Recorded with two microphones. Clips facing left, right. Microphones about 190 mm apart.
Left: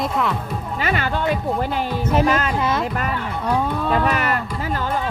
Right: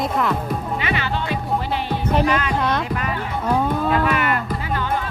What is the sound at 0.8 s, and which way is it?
Music, 45° left (ahead or behind).